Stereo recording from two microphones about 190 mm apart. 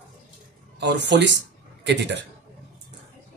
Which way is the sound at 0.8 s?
65° right (ahead or behind).